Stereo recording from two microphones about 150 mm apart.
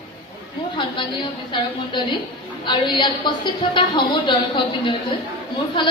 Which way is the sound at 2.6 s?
30° left (ahead or behind).